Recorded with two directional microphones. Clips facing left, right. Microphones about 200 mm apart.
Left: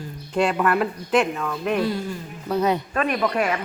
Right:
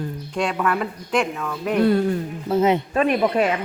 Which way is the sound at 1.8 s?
60° right (ahead or behind).